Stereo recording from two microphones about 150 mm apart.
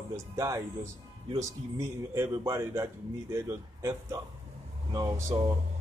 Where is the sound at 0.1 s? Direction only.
20° right (ahead or behind).